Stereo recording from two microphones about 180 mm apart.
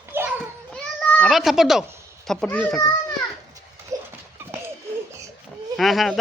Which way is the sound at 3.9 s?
15° right (ahead or behind).